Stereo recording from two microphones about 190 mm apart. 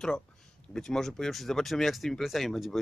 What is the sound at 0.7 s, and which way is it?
Speech, centre (ahead or behind).